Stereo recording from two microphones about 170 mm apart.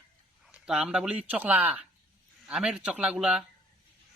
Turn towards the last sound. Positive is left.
turn(degrees=-5)  # may be behind; listen again after turning